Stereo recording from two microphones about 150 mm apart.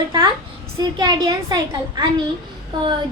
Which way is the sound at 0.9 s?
30° right (ahead or behind).